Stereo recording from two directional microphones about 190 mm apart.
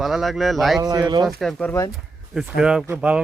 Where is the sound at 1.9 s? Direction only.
Centre (ahead or behind).